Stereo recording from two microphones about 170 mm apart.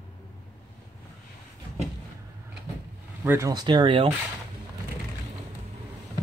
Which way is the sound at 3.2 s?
15° right (ahead or behind).